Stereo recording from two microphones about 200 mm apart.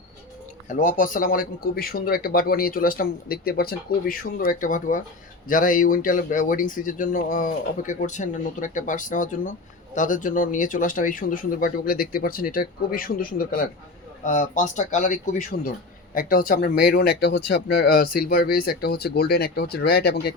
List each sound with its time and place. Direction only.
0.7 s speech: 40° left (ahead or behind)